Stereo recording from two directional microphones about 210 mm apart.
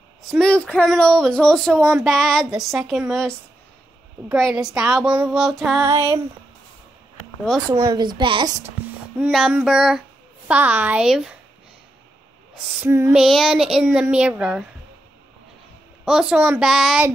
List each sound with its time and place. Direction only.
0.3 s speech: 5° left (ahead or behind)
7.2 s a sound: 5° left (ahead or behind)
7.7 s a child's voice: 20° right (ahead or behind)
9.2 s a woman's voice: 5° right (ahead or behind)
12.7 s speech: 10° right (ahead or behind)
16.1 s speech: 5° right (ahead or behind)